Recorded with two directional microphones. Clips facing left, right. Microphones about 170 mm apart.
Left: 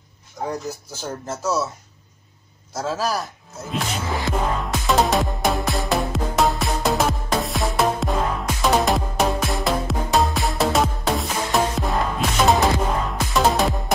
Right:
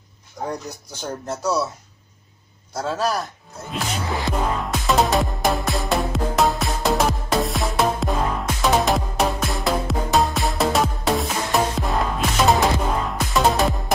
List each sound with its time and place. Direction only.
0.4 s speech: 5° right (ahead or behind)
2.7 s speech: 5° left (ahead or behind)
3.7 s music: centre (ahead or behind)